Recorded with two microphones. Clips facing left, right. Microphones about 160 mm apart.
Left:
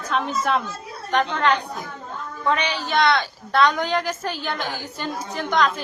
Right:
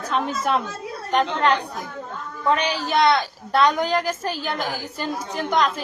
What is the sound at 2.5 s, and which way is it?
Speech, 40° right (ahead or behind).